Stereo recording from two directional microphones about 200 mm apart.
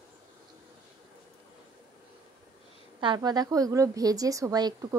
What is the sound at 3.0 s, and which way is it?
A woman's voice, 20° right (ahead or behind).